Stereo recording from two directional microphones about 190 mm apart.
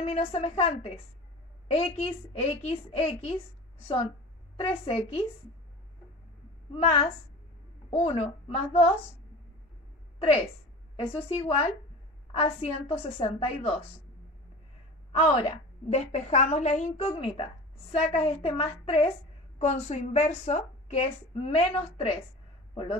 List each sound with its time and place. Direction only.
0.0 s a woman's voice: 30° left (ahead or behind)
6.7 s a woman's voice: 30° left (ahead or behind)
11.2 s a woman's voice: 30° left (ahead or behind)
15.1 s a woman's voice: 30° left (ahead or behind)